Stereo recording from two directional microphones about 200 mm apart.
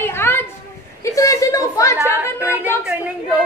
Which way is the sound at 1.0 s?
15° left (ahead or behind).